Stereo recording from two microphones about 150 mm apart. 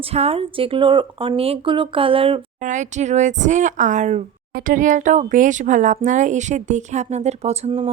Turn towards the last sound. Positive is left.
turn(degrees=-40)  # may be behind; listen again after turning